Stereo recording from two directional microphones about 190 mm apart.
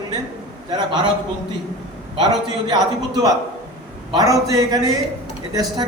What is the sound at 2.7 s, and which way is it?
A man's voice, 20° right (ahead or behind).